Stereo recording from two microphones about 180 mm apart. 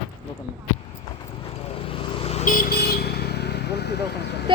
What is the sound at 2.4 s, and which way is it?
Vehicle, 50° left (ahead or behind).